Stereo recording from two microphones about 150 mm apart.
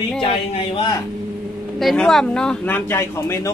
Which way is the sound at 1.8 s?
Centre (ahead or behind).